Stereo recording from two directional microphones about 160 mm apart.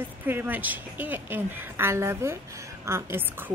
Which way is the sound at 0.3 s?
10° right (ahead or behind).